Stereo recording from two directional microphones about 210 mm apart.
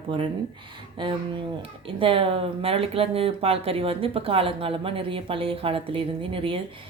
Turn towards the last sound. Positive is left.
turn(degrees=-25)  # may be behind; listen again after turning